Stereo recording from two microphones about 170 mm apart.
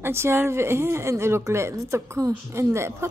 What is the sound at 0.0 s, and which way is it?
Speech, 15° right (ahead or behind).